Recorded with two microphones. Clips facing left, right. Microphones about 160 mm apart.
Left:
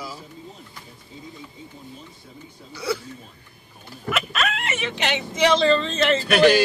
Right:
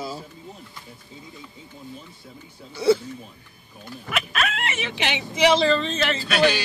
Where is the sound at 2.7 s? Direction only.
25° right (ahead or behind).